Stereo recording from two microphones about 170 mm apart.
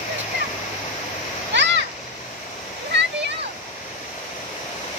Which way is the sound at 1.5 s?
90° right.